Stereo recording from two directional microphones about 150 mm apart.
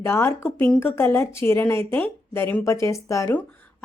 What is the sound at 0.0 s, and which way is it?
A woman's voice, 20° left (ahead or behind).